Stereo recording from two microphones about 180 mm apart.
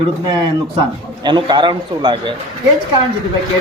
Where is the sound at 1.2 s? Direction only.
25° right (ahead or behind).